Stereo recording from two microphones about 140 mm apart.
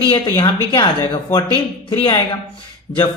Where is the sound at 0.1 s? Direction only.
35° left (ahead or behind).